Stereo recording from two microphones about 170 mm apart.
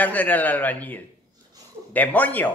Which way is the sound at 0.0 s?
10° left (ahead or behind).